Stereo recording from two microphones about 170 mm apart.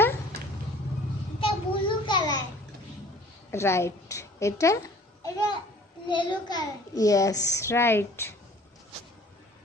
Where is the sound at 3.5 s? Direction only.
15° left (ahead or behind).